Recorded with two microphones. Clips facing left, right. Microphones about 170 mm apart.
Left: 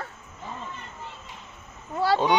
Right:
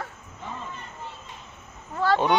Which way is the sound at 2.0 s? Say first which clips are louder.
Even; 10° left (ahead or behind).